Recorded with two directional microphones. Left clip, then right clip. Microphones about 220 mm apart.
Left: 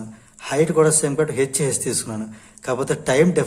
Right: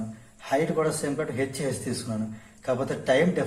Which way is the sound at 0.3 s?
50° left (ahead or behind).